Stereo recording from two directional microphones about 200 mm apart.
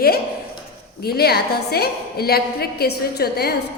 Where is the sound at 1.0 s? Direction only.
50° left (ahead or behind).